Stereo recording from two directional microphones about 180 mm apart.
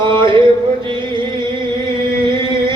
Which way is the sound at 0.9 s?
25° right (ahead or behind).